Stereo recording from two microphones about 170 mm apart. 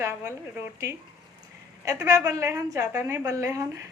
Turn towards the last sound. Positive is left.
turn(degrees=-15)  # may be behind; listen again after turning